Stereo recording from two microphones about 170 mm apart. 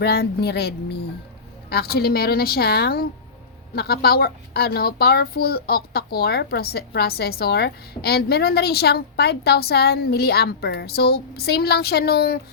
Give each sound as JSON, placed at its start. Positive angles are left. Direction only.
{"t": 0.0, "sound": "a woman's voice", "side_deg": 65}